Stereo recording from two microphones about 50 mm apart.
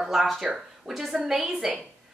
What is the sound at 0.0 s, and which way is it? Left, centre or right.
A woman's voice, centre.